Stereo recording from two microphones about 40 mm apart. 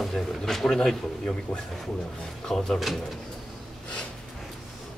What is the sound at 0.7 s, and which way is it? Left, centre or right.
Speech, centre.